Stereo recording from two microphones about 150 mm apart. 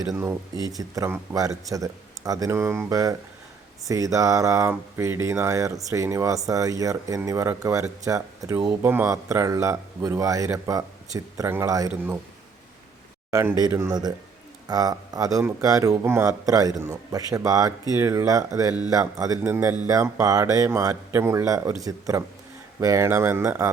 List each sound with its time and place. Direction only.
0.2 s speech: 20° right (ahead or behind)
13.3 s speech: 25° right (ahead or behind)